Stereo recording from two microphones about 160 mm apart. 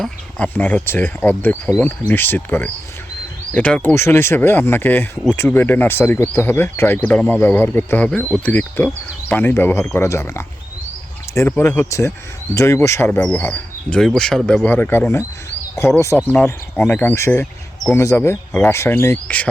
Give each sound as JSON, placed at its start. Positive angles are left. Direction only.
{"t": 0.0, "sound": "speech", "side_deg": 10}
{"t": 3.9, "sound": "speech", "side_deg": 15}